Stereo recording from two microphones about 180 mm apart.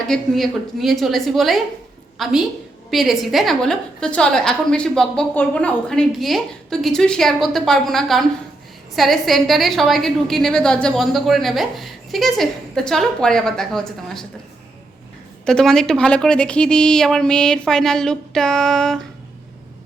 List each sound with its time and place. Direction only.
0.1 s a woman's voice: centre (ahead or behind)
15.4 s a woman's voice: 5° left (ahead or behind)